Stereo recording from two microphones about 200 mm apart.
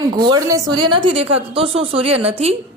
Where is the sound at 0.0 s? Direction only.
20° right (ahead or behind).